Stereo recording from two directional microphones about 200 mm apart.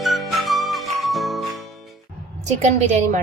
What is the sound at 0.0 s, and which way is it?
Music, centre (ahead or behind).